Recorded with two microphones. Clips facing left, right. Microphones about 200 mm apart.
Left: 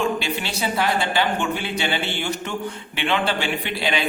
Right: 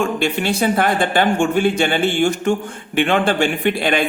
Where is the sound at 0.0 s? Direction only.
50° right (ahead or behind).